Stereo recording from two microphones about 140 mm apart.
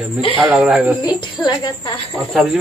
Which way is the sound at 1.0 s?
35° left (ahead or behind).